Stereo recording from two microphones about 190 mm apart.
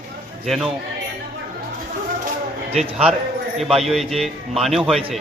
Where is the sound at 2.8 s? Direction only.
5° right (ahead or behind).